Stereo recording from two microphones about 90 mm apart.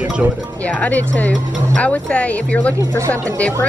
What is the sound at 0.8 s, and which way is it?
Speech, 20° left (ahead or behind).